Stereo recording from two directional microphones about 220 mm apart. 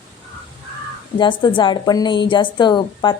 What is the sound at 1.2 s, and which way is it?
A woman's voice, 20° left (ahead or behind).